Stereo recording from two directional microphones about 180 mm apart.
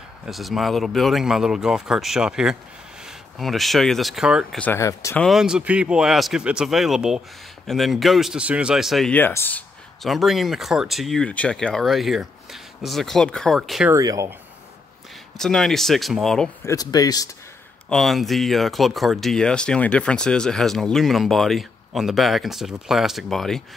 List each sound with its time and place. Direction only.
0.2 s speech: centre (ahead or behind)
4.6 s speech: 15° left (ahead or behind)
5.2 s speech: centre (ahead or behind)
13.9 s speech: 20° right (ahead or behind)
15.3 s speech: 5° left (ahead or behind)
16.6 s speech: 20° left (ahead or behind)
17.8 s speech: centre (ahead or behind)